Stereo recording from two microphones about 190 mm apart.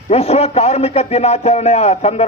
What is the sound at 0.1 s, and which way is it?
Speech, 35° left (ahead or behind).